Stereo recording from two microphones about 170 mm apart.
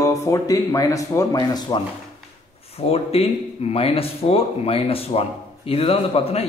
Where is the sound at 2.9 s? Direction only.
35° left (ahead or behind).